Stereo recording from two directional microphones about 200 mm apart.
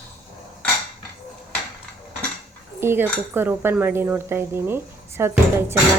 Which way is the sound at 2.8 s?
10° right (ahead or behind).